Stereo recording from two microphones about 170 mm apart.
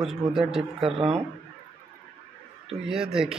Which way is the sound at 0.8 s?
35° right (ahead or behind).